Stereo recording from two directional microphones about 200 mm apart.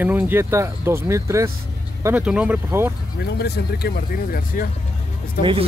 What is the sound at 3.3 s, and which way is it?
Speech, 55° left (ahead or behind).